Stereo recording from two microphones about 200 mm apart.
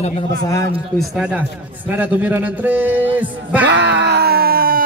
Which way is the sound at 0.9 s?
Centre (ahead or behind).